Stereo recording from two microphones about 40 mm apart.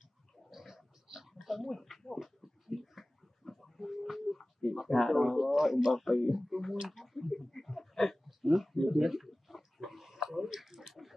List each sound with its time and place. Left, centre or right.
0.5 s pig: centre
1.7 s speech: centre
2.2 s dog: centre
8.3 s a sound: centre